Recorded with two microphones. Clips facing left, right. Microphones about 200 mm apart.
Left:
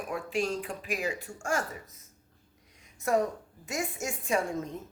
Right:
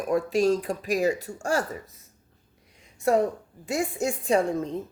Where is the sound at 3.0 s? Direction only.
30° right (ahead or behind).